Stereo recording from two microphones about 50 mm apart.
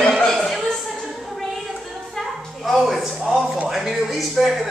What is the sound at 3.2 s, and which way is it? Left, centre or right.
Speech, centre.